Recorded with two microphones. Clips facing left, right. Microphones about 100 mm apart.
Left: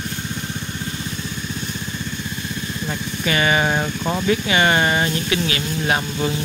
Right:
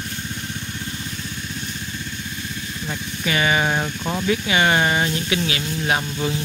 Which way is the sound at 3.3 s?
Centre (ahead or behind).